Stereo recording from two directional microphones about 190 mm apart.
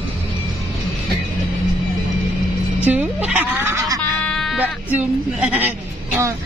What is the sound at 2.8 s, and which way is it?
Speech, 10° right (ahead or behind).